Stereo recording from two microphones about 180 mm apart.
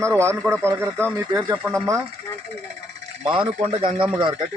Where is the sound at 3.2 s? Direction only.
30° right (ahead or behind).